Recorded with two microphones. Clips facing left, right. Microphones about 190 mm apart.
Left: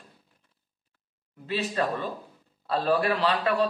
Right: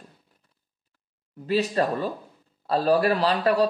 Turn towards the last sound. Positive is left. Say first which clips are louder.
# right 3 dB
turn(degrees=-40)  # may be behind; listen again after turning